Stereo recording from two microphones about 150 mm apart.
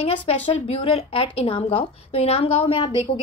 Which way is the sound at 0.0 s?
40° left (ahead or behind).